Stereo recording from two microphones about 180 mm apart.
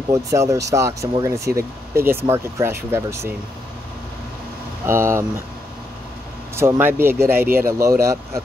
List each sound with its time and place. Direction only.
0.1 s speech: 15° right (ahead or behind)
4.8 s speech: 15° right (ahead or behind)
6.5 s speech: 15° right (ahead or behind)